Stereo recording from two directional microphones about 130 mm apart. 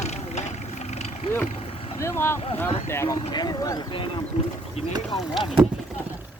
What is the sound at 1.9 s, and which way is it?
Speech, 20° left (ahead or behind).